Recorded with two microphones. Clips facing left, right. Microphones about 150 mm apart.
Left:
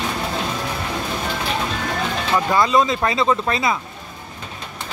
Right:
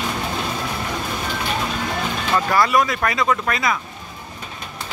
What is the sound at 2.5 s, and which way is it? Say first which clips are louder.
Speech: left 1 dB; 20° left (ahead or behind).